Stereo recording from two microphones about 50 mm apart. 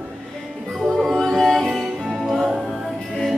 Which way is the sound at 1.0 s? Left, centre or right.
Centre.